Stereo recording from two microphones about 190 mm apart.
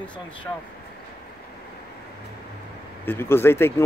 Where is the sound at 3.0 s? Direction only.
10° left (ahead or behind).